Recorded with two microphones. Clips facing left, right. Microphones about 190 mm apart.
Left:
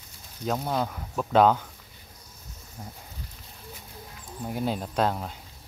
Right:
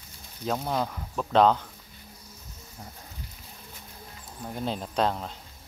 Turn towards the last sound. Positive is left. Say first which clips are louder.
# left 1 dB
turn(degrees=5)  # may be behind; listen again after turning